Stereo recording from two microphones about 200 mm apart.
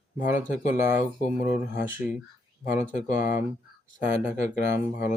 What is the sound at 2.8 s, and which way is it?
Speech, 40° left (ahead or behind).